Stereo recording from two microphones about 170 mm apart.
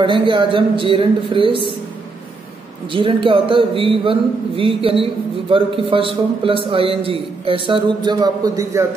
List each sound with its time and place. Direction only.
0.0 s speech: 30° right (ahead or behind)
2.9 s a man's voice: 30° right (ahead or behind)